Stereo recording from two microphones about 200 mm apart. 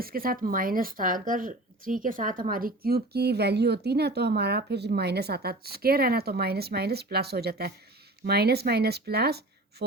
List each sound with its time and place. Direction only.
0.0 s speech: 45° right (ahead or behind)